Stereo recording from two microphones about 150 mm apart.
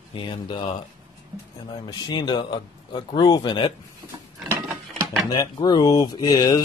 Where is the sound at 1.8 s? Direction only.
25° left (ahead or behind).